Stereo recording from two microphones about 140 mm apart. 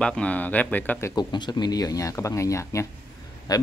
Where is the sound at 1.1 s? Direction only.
30° left (ahead or behind).